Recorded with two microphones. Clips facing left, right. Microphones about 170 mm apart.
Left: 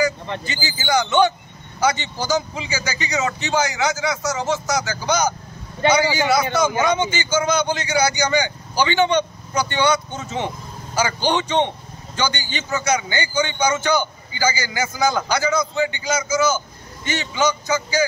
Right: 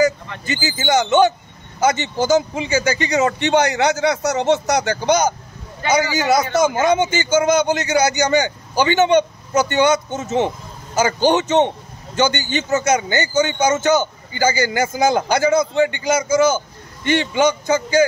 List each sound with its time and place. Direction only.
0.3 s speech: 25° left (ahead or behind)
0.9 s a man's voice: 45° right (ahead or behind)